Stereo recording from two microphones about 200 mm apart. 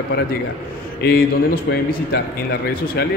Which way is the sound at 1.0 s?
50° left (ahead or behind).